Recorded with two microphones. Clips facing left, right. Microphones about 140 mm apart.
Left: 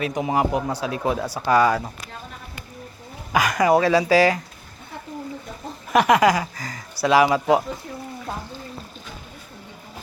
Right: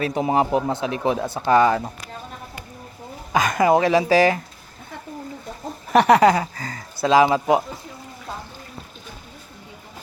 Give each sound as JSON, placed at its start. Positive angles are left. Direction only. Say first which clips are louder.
{"t": 0.0, "sound": "speech", "louder": "right 2 dB", "side_deg": -30}
{"t": 3.3, "sound": "speech", "louder": "right 1 dB", "side_deg": -25}
{"t": 5.9, "sound": "speech", "louder": "right 2 dB", "side_deg": -35}